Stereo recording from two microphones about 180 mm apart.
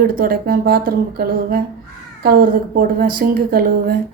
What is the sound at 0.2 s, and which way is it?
A woman's voice, 55° right (ahead or behind).